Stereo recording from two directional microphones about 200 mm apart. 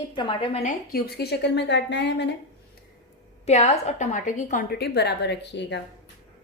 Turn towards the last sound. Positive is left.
turn(degrees=60)  # may be behind; listen again after turning